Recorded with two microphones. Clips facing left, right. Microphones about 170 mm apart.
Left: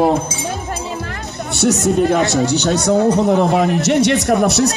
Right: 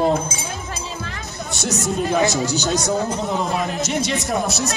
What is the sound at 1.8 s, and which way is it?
Speech, 65° left (ahead or behind).